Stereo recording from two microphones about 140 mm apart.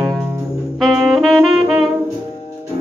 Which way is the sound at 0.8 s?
Centre (ahead or behind).